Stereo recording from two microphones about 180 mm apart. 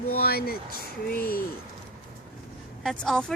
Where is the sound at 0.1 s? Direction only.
60° left (ahead or behind).